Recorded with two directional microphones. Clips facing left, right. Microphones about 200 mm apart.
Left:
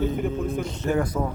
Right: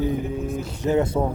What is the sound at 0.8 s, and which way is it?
Speech, 20° right (ahead or behind).